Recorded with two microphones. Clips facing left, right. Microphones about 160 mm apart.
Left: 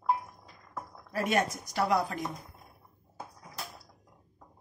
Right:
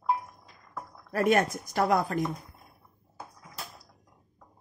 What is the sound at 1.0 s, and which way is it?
Speech, 50° right (ahead or behind).